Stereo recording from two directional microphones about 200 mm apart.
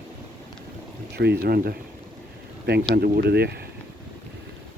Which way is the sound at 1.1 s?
55° right (ahead or behind).